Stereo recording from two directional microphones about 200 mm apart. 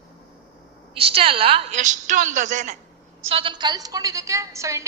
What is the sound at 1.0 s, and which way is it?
A woman's voice, 30° right (ahead or behind).